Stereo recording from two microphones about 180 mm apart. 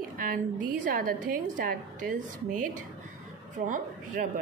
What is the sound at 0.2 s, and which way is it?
A woman's voice, 50° right (ahead or behind).